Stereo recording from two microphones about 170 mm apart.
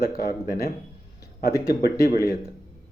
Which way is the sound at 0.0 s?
65° left (ahead or behind).